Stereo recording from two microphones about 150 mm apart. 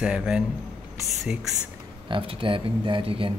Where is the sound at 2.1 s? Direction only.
35° right (ahead or behind).